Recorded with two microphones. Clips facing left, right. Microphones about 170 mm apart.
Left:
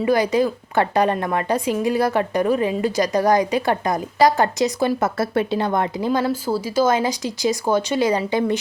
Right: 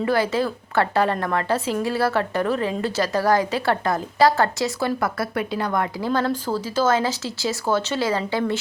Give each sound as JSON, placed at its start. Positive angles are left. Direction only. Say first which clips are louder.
{"t": 0.0, "sound": "a woman's voice", "louder": "left 3 dB", "side_deg": 15}
{"t": 6.1, "sound": "a woman's voice", "louder": "left 1 dB", "side_deg": 10}